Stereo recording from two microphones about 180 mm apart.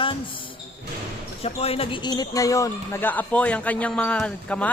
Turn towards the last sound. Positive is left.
turn(degrees=5)  # may be behind; listen again after turning